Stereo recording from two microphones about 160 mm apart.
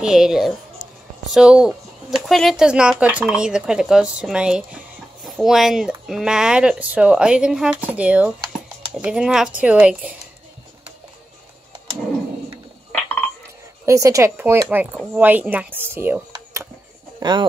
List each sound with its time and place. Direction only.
0.0 s speech: 5° right (ahead or behind)
13.8 s speech: 20° right (ahead or behind)
17.2 s speech: 25° right (ahead or behind)